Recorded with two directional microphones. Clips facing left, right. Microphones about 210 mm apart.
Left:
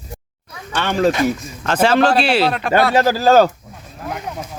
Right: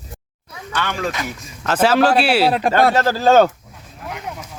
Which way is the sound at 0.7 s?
30° left (ahead or behind).